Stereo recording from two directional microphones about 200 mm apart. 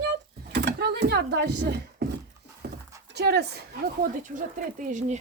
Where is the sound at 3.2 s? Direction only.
55° right (ahead or behind).